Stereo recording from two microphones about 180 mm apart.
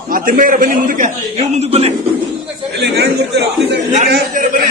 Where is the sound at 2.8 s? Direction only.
70° right (ahead or behind).